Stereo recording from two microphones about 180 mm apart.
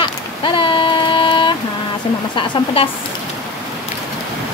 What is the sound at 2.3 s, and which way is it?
Speech, 30° left (ahead or behind).